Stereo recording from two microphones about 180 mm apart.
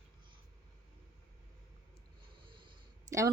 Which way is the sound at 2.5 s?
20° right (ahead or behind).